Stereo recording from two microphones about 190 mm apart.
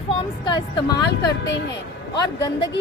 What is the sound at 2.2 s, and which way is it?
Speech, 20° left (ahead or behind).